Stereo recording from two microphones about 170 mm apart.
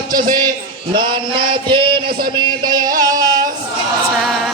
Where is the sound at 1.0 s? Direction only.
30° right (ahead or behind).